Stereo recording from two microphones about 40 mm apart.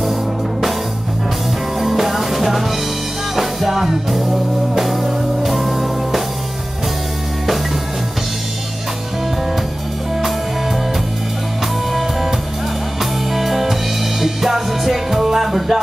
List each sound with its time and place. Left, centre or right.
1.8 s music: centre
11.9 s music: centre